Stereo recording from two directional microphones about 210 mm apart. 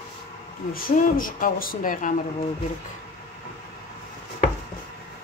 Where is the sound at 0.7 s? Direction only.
40° left (ahead or behind).